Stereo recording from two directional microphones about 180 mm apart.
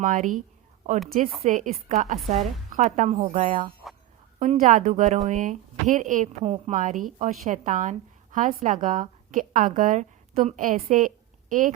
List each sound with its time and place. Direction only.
0.0 s a woman's voice: 45° right (ahead or behind)
3.8 s music: centre (ahead or behind)
4.4 s speech: 45° right (ahead or behind)